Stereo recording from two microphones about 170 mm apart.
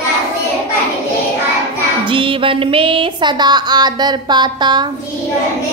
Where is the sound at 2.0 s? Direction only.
30° right (ahead or behind).